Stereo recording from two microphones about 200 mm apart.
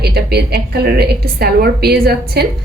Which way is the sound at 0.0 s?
55° right (ahead or behind).